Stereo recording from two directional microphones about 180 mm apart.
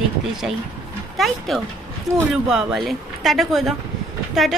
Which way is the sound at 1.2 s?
Centre (ahead or behind).